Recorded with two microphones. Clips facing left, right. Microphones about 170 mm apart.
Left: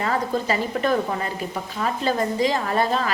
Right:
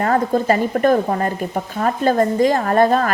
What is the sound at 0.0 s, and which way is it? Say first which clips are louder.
A woman's voice: right 6 dB; 50° right (ahead or behind).